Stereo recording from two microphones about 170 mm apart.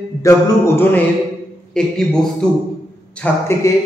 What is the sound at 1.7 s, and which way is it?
Speech, 5° left (ahead or behind).